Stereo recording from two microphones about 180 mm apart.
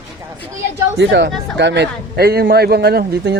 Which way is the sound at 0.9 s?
75° right (ahead or behind).